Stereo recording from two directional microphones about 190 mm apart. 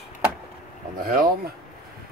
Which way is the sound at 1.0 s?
50° right (ahead or behind).